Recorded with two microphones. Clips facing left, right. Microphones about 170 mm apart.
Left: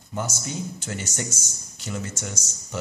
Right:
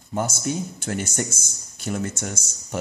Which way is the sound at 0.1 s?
50° right (ahead or behind).